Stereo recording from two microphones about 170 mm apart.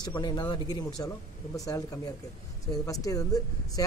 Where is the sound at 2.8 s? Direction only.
20° left (ahead or behind).